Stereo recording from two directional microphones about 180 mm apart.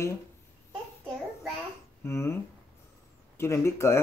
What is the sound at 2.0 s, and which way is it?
Speech, 15° left (ahead or behind).